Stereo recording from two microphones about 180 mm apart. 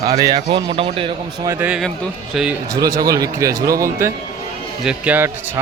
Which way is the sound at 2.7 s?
20° right (ahead or behind).